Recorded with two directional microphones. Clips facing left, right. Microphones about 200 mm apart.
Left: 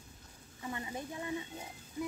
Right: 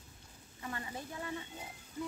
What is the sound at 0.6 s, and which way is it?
A woman's voice, 20° left (ahead or behind).